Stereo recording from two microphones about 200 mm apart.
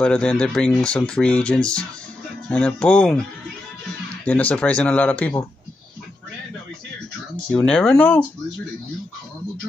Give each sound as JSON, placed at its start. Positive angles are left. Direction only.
{"t": 0.0, "sound": "speech", "side_deg": 5}
{"t": 4.3, "sound": "speech", "side_deg": 5}
{"t": 7.5, "sound": "speech", "side_deg": 5}